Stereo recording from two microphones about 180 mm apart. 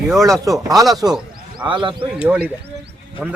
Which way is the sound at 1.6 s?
25° right (ahead or behind).